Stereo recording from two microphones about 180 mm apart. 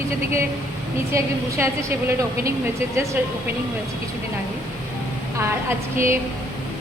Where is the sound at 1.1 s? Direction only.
15° right (ahead or behind).